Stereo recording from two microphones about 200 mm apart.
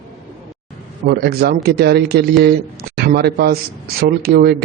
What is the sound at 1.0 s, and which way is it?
A man's voice, 50° right (ahead or behind).